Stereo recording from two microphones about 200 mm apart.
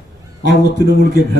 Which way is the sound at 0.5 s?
55° left (ahead or behind).